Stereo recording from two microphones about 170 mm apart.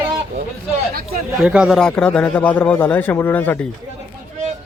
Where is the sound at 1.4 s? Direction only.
5° right (ahead or behind); by 3.6 s 10° left (ahead or behind).